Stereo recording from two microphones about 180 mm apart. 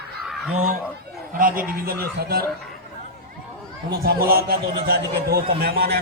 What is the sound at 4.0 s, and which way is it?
A man's voice, 55° right (ahead or behind).